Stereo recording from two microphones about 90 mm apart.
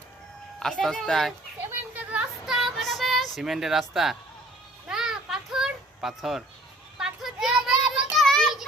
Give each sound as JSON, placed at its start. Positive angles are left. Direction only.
{"t": 0.6, "sound": "speech", "side_deg": 5}
{"t": 1.9, "sound": "a sound", "side_deg": -20}
{"t": 2.5, "sound": "child singing", "side_deg": 0}
{"t": 3.3, "sound": "speech", "side_deg": -5}
{"t": 4.9, "sound": "a sound", "side_deg": -5}
{"t": 7.0, "sound": "child singing", "side_deg": -5}